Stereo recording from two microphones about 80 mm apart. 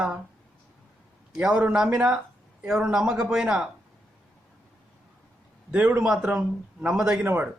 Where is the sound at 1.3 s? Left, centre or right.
Centre.